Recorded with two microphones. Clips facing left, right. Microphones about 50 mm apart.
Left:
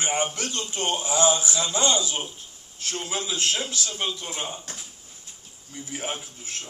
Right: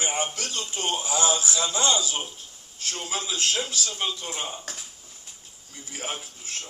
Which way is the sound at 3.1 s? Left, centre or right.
Centre.